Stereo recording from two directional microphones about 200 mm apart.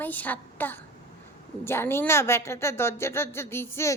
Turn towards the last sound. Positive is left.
turn(degrees=10)  # may be behind; listen again after turning